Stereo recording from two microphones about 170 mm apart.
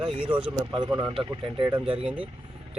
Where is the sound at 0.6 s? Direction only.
25° right (ahead or behind).